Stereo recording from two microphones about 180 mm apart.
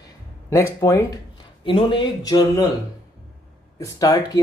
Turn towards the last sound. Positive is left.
turn(degrees=20)  # may be behind; listen again after turning